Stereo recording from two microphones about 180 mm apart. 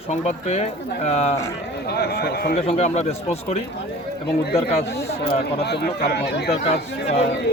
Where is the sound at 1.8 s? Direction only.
60° left (ahead or behind).